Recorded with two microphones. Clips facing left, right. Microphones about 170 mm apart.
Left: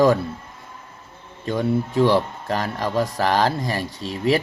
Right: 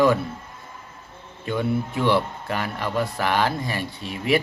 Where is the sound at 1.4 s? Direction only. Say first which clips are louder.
Left 2 dB; 40° left (ahead or behind).